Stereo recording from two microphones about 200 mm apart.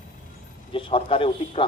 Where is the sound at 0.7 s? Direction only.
25° left (ahead or behind).